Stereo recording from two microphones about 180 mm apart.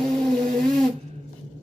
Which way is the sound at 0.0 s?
Centre (ahead or behind).